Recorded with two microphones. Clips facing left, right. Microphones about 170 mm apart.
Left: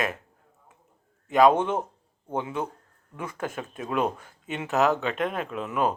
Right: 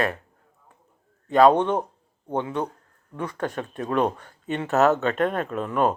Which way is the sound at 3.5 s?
40° right (ahead or behind).